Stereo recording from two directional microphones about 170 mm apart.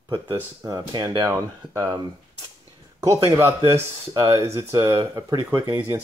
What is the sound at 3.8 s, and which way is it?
Speech, 20° right (ahead or behind).